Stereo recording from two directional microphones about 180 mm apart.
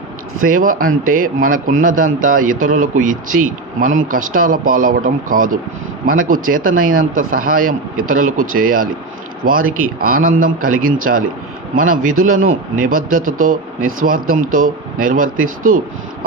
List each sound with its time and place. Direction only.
0.4 s speech: 50° right (ahead or behind)